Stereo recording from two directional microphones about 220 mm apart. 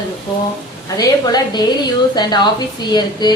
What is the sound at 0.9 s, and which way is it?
A woman's voice, 15° left (ahead or behind).